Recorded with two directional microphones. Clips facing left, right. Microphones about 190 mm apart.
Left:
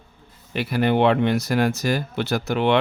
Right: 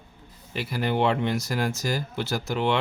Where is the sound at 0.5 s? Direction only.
65° left (ahead or behind).